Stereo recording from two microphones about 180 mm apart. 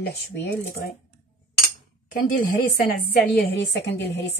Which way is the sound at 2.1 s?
50° left (ahead or behind).